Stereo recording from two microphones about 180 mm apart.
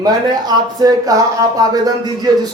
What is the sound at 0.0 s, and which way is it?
Speech, 20° right (ahead or behind).